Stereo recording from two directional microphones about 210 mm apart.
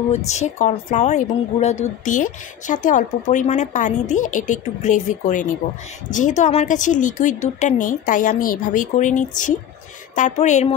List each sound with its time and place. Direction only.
0.1 s a woman's voice: 35° left (ahead or behind)